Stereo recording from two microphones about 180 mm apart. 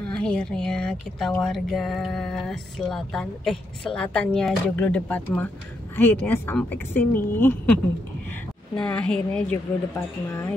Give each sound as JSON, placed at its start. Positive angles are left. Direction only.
{"t": 0.0, "sound": "a woman's voice", "side_deg": 5}
{"t": 8.7, "sound": "a woman's voice", "side_deg": 5}